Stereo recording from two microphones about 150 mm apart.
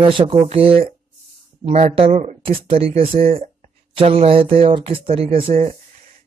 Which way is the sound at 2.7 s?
40° right (ahead or behind).